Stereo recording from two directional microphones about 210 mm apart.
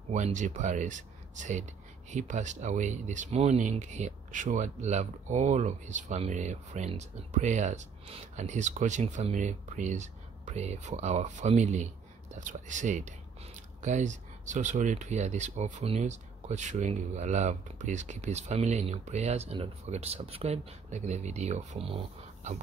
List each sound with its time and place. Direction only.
0.1 s speech: 35° right (ahead or behind)